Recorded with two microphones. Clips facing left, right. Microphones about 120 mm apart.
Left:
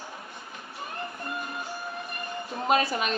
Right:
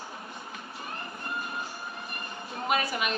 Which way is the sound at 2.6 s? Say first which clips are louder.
Left 4 dB; 30° left (ahead or behind).